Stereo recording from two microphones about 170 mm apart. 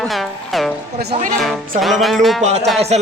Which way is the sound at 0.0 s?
Centre (ahead or behind).